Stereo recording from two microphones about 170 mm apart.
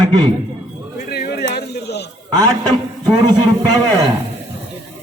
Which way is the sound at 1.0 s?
65° left (ahead or behind).